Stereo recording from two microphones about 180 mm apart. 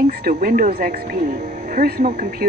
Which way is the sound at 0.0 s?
55° right (ahead or behind).